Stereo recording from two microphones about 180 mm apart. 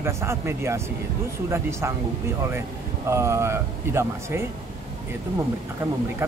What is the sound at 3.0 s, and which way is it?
Speech, 15° right (ahead or behind).